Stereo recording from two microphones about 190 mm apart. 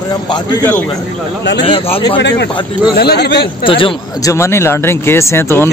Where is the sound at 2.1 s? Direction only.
65° left (ahead or behind).